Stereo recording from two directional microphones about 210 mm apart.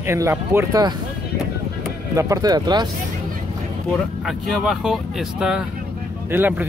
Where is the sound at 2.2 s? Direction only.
15° right (ahead or behind).